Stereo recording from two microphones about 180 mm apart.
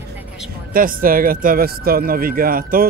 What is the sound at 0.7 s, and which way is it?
Speech, 50° right (ahead or behind).